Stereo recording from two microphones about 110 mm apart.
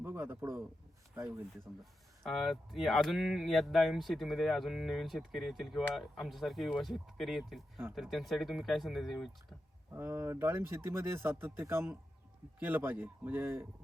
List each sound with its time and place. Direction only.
0.0 s a man's voice: 20° right (ahead or behind)
1.1 s speech: 10° right (ahead or behind)
1.8 s speech: centre (ahead or behind)
9.9 s a man's voice: 25° right (ahead or behind)